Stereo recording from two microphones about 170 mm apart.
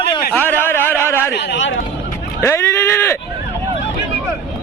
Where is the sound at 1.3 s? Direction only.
80° left.